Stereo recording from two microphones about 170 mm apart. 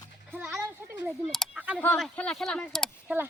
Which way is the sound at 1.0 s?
Centre (ahead or behind).